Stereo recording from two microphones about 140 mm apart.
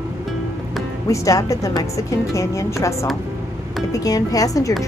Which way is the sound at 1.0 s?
25° left (ahead or behind).